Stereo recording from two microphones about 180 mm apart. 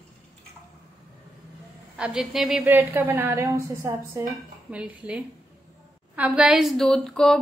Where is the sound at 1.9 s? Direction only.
5° right (ahead or behind).